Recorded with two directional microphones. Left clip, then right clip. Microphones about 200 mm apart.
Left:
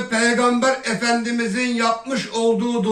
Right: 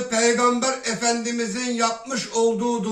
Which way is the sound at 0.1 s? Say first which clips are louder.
Left 1 dB; 60° right (ahead or behind).